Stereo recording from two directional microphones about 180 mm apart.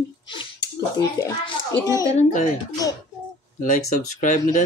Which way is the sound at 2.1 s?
40° left (ahead or behind).